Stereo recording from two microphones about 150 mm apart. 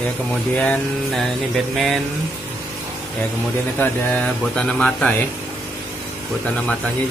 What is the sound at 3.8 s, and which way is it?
Speech, 10° left (ahead or behind).